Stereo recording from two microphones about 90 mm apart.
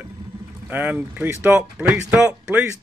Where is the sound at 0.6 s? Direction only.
20° right (ahead or behind).